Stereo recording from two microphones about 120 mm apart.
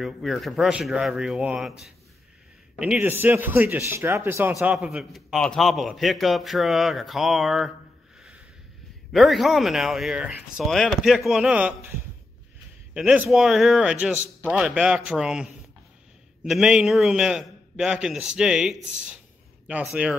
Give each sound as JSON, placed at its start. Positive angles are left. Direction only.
{"t": 0.0, "sound": "a man's voice", "side_deg": 0}
{"t": 4.6, "sound": "a man's voice", "side_deg": -5}
{"t": 9.1, "sound": "a man's voice", "side_deg": 0}
{"t": 12.9, "sound": "a man's voice", "side_deg": -10}